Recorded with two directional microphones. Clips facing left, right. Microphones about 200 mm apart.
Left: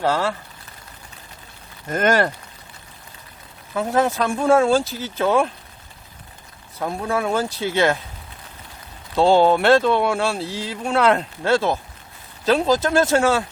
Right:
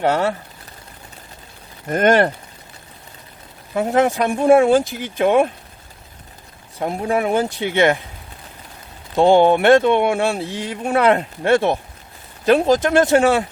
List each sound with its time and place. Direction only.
0.0 s speech: 20° right (ahead or behind)
3.8 s speech: 15° right (ahead or behind)
6.7 s speech: 20° right (ahead or behind)
9.1 s speech: 20° right (ahead or behind)